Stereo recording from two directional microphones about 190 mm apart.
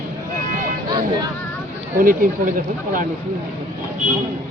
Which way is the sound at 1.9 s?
45° right (ahead or behind).